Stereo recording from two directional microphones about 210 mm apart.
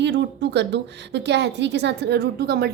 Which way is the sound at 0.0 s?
55° right (ahead or behind).